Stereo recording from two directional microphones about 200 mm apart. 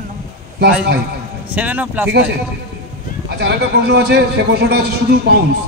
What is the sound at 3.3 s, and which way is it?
A man's voice, 55° right (ahead or behind).